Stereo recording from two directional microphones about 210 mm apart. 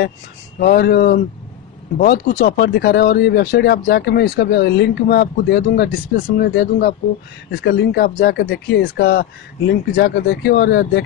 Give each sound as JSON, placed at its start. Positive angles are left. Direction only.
{"t": 0.6, "sound": "speech", "side_deg": 50}